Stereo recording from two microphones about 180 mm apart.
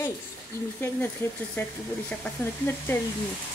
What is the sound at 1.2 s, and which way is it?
Speech, 15° left (ahead or behind).